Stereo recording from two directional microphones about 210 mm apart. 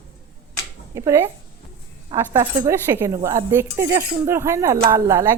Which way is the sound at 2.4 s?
15° right (ahead or behind).